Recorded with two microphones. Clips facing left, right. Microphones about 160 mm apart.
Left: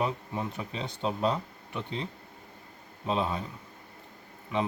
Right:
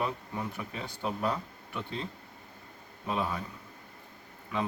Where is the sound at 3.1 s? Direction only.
25° left (ahead or behind).